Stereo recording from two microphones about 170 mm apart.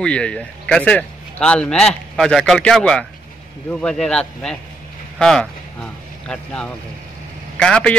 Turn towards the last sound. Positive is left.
turn(degrees=5)  # may be behind; listen again after turning